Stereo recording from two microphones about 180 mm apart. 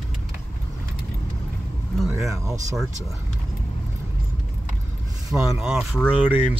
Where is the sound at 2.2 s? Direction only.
15° right (ahead or behind).